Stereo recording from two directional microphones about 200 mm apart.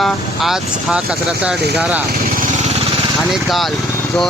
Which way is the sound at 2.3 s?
40° right (ahead or behind).